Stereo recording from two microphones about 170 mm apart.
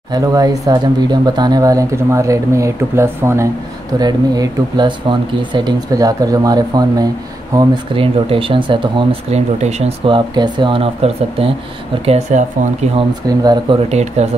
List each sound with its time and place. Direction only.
0.1 s speech: 20° right (ahead or behind)
9.6 s speech: 40° right (ahead or behind)
12.9 s speech: 25° right (ahead or behind)
13.8 s speech: 40° right (ahead or behind)